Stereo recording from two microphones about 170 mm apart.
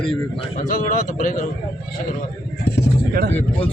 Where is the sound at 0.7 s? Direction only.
50° left (ahead or behind).